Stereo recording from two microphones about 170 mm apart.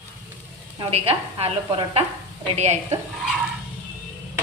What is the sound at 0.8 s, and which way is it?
Speech, 35° right (ahead or behind).